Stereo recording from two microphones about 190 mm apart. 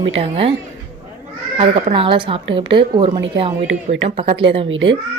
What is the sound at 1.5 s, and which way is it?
Speech, 30° right (ahead or behind).